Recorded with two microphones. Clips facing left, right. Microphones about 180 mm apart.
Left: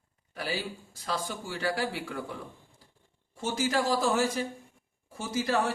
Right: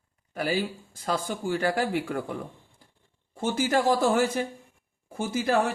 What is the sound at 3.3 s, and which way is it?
A man's voice, 55° right (ahead or behind).